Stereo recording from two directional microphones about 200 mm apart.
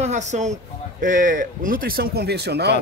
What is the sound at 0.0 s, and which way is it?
Speech, 35° right (ahead or behind).